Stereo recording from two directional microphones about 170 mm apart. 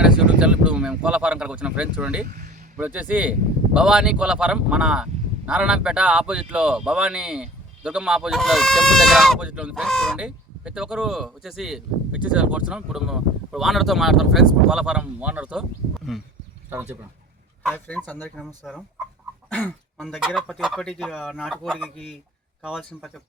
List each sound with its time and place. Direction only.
0.0 s a sound: 5° right (ahead or behind)
2.2 s speech: 50° right (ahead or behind)
2.7 s speech: 10° right (ahead or behind)
16.6 s speech: 10° right (ahead or behind)
17.7 s speech: 10° left (ahead or behind)